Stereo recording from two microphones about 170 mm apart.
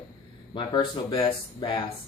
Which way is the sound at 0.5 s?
25° left (ahead or behind).